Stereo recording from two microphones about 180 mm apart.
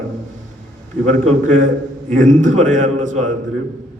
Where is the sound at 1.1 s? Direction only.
45° right (ahead or behind).